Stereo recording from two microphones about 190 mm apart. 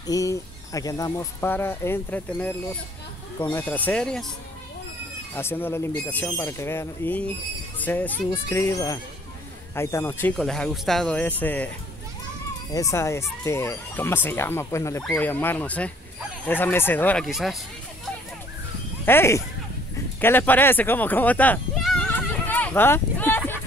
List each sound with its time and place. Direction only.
0.0 s speech: 20° left (ahead or behind)
5.3 s a child's voice: 10° left (ahead or behind)
12.7 s speech: 15° left (ahead or behind); by 17.6 s centre (ahead or behind)
19.0 s speech: 15° left (ahead or behind)
20.2 s a sound: 10° left (ahead or behind)